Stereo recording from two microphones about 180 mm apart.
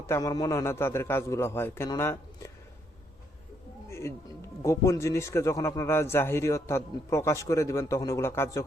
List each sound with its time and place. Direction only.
0.1 s a man's voice: 20° left (ahead or behind)
3.8 s a sound: 15° left (ahead or behind)
4.6 s a man's voice: 15° left (ahead or behind)